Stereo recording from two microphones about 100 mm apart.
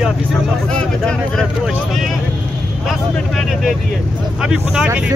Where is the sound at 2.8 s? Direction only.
Centre (ahead or behind).